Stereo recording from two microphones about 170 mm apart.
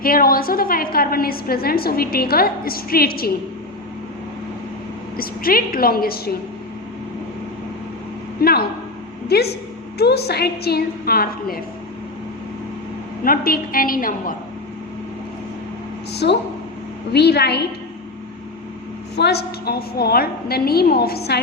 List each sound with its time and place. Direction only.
0.0 s a woman's voice: 60° left (ahead or behind)
5.1 s a woman's voice: 60° left (ahead or behind)
8.4 s a woman's voice: 65° left (ahead or behind)
13.2 s a woman's voice: 60° left (ahead or behind)
16.1 s a woman's voice: 85° left
19.1 s a woman's voice: 75° left (ahead or behind)